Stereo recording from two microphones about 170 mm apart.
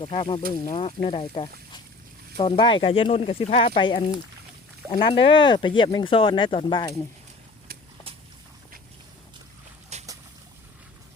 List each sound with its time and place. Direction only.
0.0 s speech: 35° left (ahead or behind)
9.9 s boat: 40° right (ahead or behind)